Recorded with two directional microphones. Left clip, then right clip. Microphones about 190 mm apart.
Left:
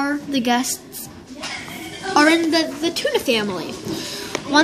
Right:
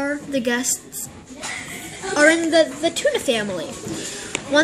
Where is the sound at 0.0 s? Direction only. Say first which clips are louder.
Left 1 dB; 30° left (ahead or behind).